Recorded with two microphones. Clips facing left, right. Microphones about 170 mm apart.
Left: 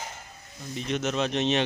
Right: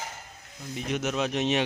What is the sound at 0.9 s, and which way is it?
Speech, 10° right (ahead or behind).